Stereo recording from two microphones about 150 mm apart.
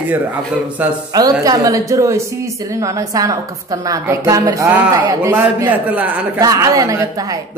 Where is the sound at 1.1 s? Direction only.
25° right (ahead or behind).